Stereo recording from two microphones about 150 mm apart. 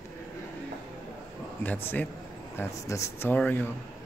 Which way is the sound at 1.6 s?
10° left (ahead or behind).